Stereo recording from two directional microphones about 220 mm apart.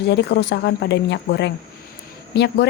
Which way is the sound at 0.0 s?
50° left (ahead or behind).